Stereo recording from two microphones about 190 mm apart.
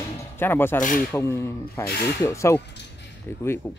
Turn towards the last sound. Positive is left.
turn(degrees=10)  # may be behind; listen again after turning